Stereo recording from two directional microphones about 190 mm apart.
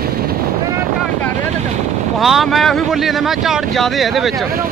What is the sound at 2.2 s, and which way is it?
Speech, centre (ahead or behind).